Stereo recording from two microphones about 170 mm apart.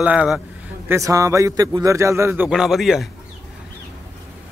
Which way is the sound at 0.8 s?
20° right (ahead or behind).